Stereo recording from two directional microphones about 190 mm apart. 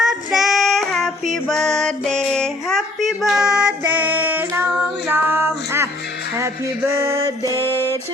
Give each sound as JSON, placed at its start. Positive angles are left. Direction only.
{"t": 0.0, "sound": "child singing", "side_deg": 0}
{"t": 6.3, "sound": "music", "side_deg": -15}
{"t": 7.6, "sound": "music", "side_deg": 10}